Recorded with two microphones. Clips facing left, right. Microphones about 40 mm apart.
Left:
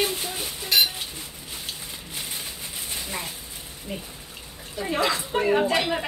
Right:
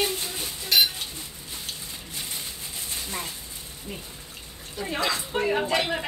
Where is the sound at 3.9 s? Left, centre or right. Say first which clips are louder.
Left 4 dB; centre.